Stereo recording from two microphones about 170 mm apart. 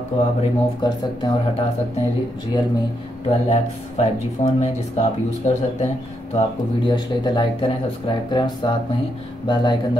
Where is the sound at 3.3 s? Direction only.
40° left (ahead or behind).